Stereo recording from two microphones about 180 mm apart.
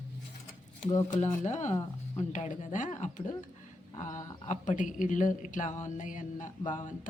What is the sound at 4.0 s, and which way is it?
Speech, 45° left (ahead or behind).